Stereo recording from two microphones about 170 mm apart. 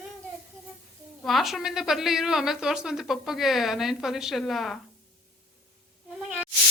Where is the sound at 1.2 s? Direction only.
Centre (ahead or behind).